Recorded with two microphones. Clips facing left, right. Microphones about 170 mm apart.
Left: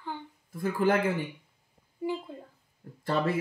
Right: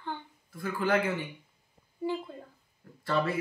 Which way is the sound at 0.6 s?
45° left (ahead or behind).